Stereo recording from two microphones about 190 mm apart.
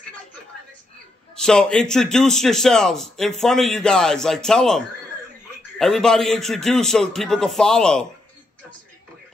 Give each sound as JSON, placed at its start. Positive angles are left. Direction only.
{"t": 1.3, "sound": "a man's voice", "side_deg": 5}